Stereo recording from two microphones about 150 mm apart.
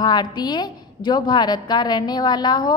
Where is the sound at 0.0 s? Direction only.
30° left (ahead or behind).